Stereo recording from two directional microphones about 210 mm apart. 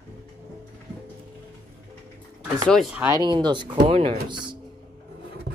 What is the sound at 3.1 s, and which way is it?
Speech, 20° right (ahead or behind).